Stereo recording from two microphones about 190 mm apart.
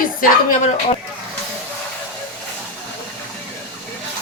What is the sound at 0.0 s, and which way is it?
Speech, 45° left (ahead or behind).